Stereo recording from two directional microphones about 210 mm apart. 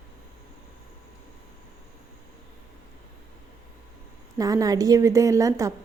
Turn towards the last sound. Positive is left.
turn(degrees=-15)  # may be behind; listen again after turning